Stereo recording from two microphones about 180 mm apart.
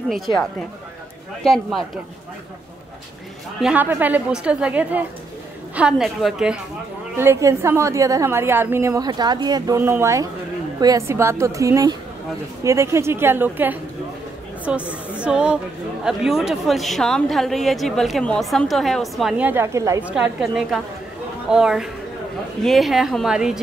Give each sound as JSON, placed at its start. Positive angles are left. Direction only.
{"t": 0.3, "sound": "a woman's voice", "side_deg": 25}
{"t": 1.4, "sound": "a woman's voice", "side_deg": 0}
{"t": 3.6, "sound": "a woman's voice", "side_deg": -10}
{"t": 7.2, "sound": "a woman's voice", "side_deg": -15}